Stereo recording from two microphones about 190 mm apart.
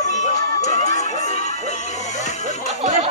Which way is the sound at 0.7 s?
35° left (ahead or behind).